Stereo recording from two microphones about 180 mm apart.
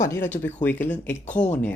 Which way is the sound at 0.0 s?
15° left (ahead or behind).